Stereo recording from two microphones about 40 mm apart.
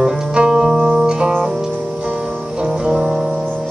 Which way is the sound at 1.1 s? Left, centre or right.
Right.